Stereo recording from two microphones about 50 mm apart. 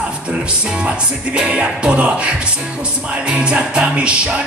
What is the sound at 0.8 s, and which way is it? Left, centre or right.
Music, right.